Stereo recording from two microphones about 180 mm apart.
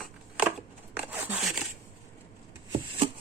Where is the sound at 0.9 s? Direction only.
10° right (ahead or behind).